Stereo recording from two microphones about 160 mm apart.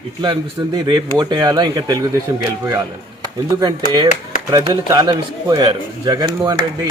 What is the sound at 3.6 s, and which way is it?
A man's voice, 25° right (ahead or behind).